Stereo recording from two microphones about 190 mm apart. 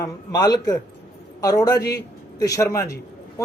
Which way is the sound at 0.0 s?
20° left (ahead or behind).